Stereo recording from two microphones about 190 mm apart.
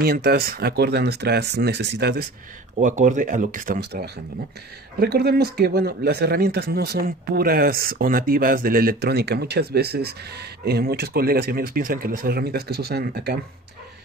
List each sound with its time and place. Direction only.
0.0 s speech: 50° right (ahead or behind)
2.8 s speech: 40° right (ahead or behind); by 13.4 s 55° right (ahead or behind)